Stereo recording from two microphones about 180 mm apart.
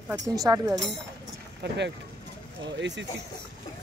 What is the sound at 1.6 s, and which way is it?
Speech, 75° right (ahead or behind).